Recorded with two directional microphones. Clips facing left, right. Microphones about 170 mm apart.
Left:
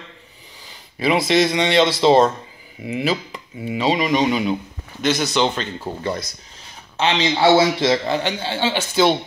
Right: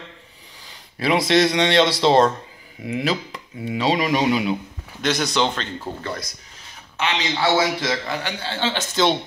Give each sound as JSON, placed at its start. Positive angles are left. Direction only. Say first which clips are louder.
{"t": 0.9, "sound": "speech", "louder": "left 1 dB", "side_deg": 0}
{"t": 6.0, "sound": "a man's voice", "louder": "left 5 dB", "side_deg": 25}